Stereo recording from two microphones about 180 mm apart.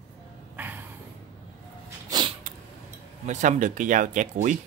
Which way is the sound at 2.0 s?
25° right (ahead or behind).